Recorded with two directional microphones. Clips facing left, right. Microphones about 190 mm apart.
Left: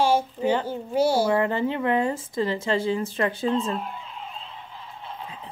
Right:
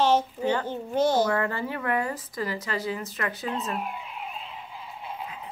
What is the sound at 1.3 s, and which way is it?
Speech, 20° left (ahead or behind).